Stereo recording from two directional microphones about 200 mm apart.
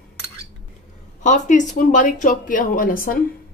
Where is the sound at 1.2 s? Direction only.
40° left (ahead or behind).